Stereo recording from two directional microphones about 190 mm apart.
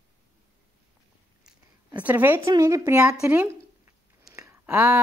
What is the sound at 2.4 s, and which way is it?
Speech, 20° right (ahead or behind).